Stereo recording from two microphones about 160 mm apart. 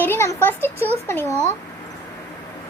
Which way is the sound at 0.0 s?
15° left (ahead or behind).